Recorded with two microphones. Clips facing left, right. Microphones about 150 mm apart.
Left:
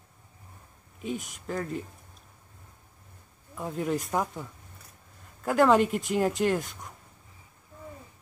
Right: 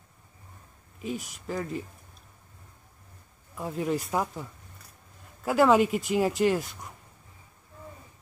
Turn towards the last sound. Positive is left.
turn(degrees=0)  # may be behind; listen again after turning